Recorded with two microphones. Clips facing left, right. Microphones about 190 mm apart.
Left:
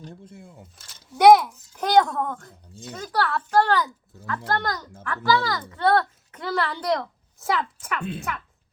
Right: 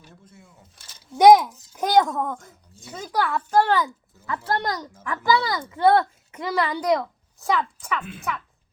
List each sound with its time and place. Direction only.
1.2 s a child's voice: 10° right (ahead or behind)